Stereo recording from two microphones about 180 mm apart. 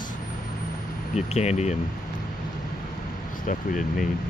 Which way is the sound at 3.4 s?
45° left (ahead or behind).